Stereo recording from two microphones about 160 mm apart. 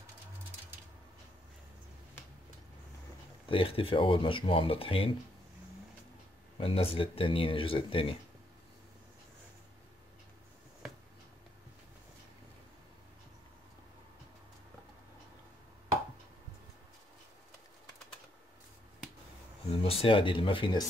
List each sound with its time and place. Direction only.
3.4 s speech: 35° left (ahead or behind)
6.6 s speech: 35° left (ahead or behind)
19.7 s speech: 35° left (ahead or behind)